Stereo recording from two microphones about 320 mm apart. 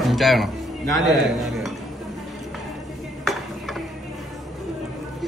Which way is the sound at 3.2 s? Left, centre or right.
Centre.